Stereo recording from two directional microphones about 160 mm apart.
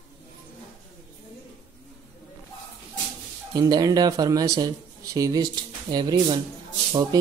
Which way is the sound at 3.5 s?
25° right (ahead or behind).